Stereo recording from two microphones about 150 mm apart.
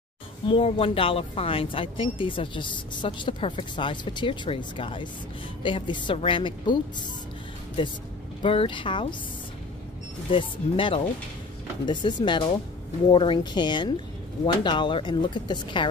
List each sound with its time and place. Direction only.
0.5 s speech: 40° left (ahead or behind)
8.4 s speech: 35° left (ahead or behind)
10.3 s speech: 35° left (ahead or behind)